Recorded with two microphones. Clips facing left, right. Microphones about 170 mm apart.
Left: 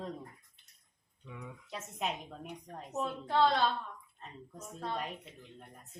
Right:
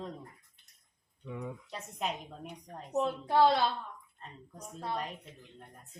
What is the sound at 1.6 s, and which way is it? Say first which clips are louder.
Speech: left 3 dB; centre (ahead or behind).